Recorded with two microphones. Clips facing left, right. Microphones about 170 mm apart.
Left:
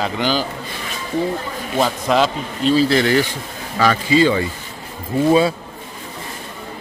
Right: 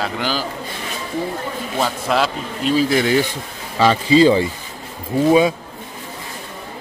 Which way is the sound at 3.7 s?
25° right (ahead or behind).